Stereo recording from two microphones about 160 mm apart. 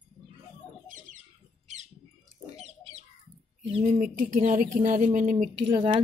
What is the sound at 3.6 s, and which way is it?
Speech, 40° right (ahead or behind).